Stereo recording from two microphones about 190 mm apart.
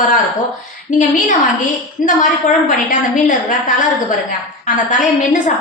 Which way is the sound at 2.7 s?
45° left (ahead or behind).